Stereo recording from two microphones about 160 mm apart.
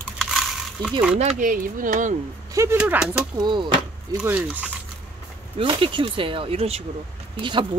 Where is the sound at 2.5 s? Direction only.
15° right (ahead or behind).